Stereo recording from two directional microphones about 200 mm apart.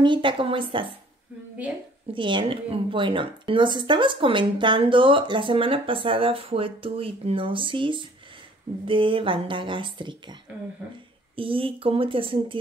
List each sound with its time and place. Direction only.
0.0 s a woman's voice: 25° right (ahead or behind)
2.1 s a woman's voice: 25° right (ahead or behind)
11.3 s a woman's voice: 25° right (ahead or behind)